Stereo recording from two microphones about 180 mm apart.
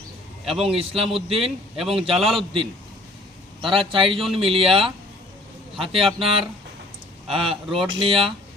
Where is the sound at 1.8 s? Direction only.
Centre (ahead or behind).